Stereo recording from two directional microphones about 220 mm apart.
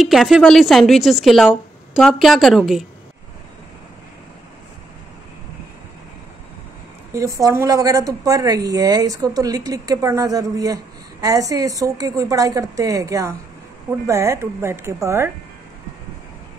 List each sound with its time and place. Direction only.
0.0 s speech: centre (ahead or behind)
7.2 s a woman's voice: 15° right (ahead or behind)